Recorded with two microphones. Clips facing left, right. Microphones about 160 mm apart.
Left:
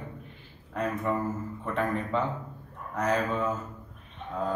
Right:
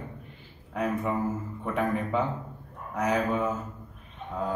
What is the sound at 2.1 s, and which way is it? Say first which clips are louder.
A man's voice: right 1 dB; 10° right (ahead or behind).